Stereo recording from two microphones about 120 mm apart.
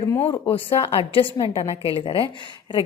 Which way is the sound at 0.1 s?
20° left (ahead or behind).